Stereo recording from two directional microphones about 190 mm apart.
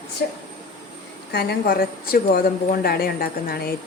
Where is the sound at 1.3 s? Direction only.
60° left (ahead or behind).